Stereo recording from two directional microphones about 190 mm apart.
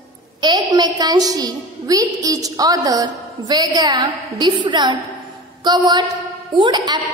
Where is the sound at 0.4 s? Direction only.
20° right (ahead or behind).